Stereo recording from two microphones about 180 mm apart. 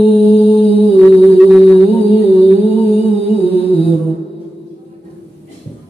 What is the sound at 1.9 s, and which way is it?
Music, 30° left (ahead or behind).